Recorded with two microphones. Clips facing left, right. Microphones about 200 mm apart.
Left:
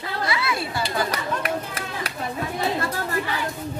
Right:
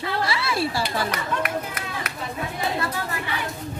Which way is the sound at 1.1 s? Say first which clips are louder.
Left 1 dB; 30° left (ahead or behind).